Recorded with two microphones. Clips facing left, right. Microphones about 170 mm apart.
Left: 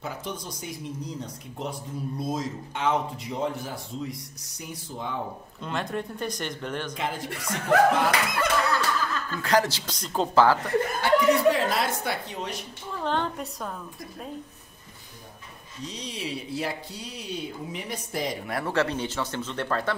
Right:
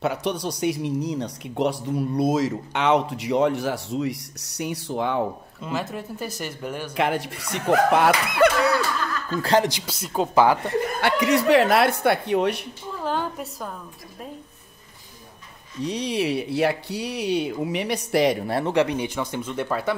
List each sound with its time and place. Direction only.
0.0 s speech: 75° right (ahead or behind)
5.6 s speech: 5° right (ahead or behind)
7.0 s speech: 70° right (ahead or behind)
9.4 s a man's voice: 30° right (ahead or behind)
9.7 s speech: 10° right (ahead or behind)
11.0 s speech: 80° right; by 12.6 s 65° right (ahead or behind)
13.0 s a woman's voice: 5° right (ahead or behind)
15.8 s speech: 65° right (ahead or behind)
18.5 s speech: 20° right (ahead or behind)